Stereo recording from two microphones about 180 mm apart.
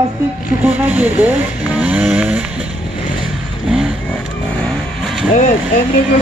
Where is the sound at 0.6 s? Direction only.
10° right (ahead or behind).